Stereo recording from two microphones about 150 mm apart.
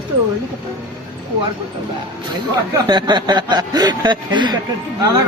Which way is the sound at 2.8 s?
30° right (ahead or behind).